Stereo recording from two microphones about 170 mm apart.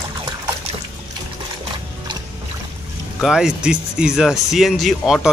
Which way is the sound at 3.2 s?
5° right (ahead or behind).